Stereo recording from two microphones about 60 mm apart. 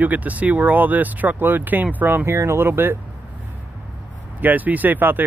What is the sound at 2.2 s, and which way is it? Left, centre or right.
Speech, right.